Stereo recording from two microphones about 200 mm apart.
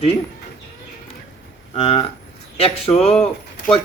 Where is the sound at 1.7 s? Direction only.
30° left (ahead or behind).